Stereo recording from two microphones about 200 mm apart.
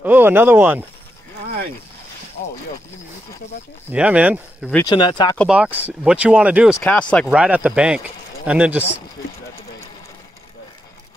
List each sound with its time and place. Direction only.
0.0 s speech: 10° right (ahead or behind)
3.9 s speech: 5° right (ahead or behind)
4.8 s speech: 20° left (ahead or behind)
5.5 s speech: 5° right (ahead or behind)
7.3 s speech: 5° right (ahead or behind)